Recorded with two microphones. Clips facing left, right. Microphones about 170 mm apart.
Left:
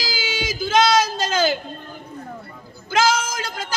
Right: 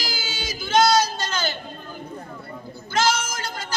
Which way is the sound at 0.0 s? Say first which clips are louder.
Left 5 dB; 90° left.